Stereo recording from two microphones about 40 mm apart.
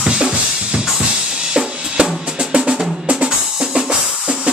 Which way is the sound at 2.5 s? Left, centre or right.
Right.